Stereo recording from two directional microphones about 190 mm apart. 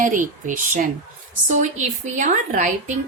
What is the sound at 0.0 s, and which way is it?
A woman's voice, 45° right (ahead or behind).